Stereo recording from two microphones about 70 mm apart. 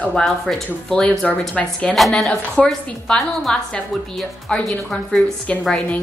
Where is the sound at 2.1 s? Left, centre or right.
Centre.